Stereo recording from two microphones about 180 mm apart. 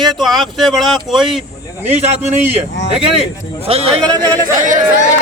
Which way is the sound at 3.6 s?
35° right (ahead or behind).